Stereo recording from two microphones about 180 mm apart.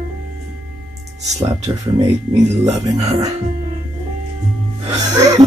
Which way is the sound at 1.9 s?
20° right (ahead or behind).